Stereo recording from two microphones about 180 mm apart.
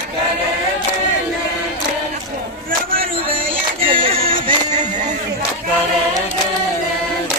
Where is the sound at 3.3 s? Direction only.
30° right (ahead or behind).